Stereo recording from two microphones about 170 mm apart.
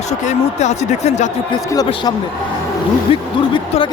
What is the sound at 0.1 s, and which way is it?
Speech, 45° left (ahead or behind).